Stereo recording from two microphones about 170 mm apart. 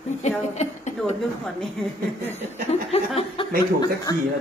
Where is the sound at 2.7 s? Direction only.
35° left (ahead or behind).